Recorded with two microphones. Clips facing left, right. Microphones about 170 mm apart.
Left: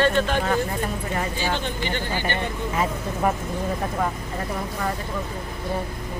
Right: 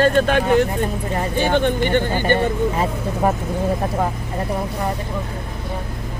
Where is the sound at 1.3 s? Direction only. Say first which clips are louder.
Right 9 dB; 60° right (ahead or behind).